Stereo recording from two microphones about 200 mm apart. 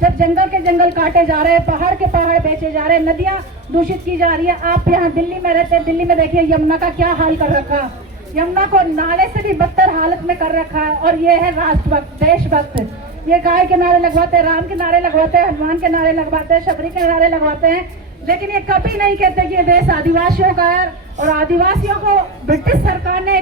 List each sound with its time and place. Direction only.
0.0 s a woman's voice: 45° right (ahead or behind)